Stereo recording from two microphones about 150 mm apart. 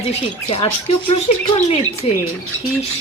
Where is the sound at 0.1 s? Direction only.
40° left (ahead or behind).